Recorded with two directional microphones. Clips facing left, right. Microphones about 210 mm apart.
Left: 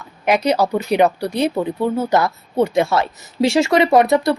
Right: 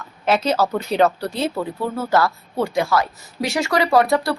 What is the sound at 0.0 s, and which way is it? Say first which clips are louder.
Speech: left 2 dB; 15° left (ahead or behind).